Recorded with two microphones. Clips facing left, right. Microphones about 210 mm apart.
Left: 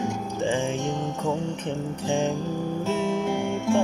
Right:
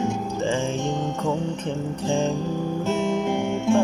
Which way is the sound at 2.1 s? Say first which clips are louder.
Right 1 dB; 15° left (ahead or behind).